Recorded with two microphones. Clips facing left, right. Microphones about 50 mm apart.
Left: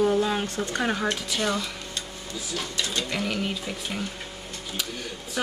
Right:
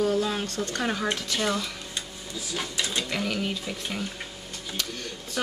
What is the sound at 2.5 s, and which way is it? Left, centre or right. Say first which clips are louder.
Speech: even; centre.